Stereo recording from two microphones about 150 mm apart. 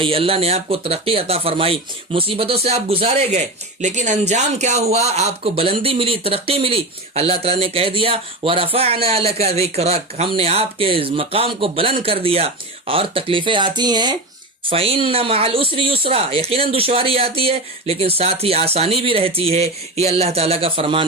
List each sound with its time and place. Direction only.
0.0 s speech: 40° right (ahead or behind)